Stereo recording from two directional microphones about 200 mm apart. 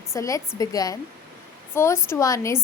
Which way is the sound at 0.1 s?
15° left (ahead or behind).